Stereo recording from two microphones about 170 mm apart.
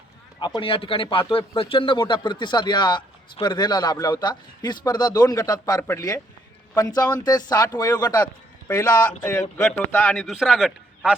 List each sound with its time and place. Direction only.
0.3 s speech: 25° left (ahead or behind)
8.2 s a sound: 10° left (ahead or behind)
9.0 s a man's voice: 15° left (ahead or behind)